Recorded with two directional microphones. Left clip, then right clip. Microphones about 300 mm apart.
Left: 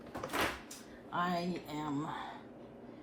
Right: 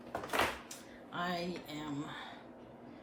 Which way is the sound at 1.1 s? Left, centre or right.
Centre.